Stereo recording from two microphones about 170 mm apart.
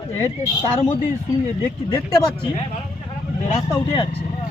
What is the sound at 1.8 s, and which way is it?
Speech, 25° left (ahead or behind).